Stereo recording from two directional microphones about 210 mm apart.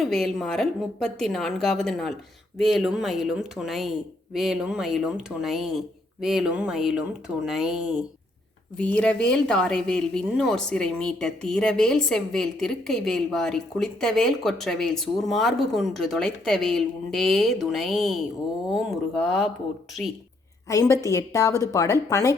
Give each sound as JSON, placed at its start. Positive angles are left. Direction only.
{"t": 0.0, "sound": "speech", "side_deg": 0}
{"t": 20.7, "sound": "a woman's voice", "side_deg": 15}